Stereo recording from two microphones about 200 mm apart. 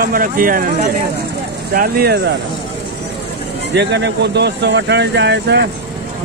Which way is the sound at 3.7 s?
60° right (ahead or behind).